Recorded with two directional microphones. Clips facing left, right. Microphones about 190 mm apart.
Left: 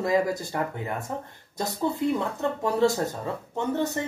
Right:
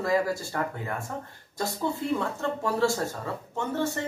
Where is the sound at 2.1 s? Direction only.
20° left (ahead or behind).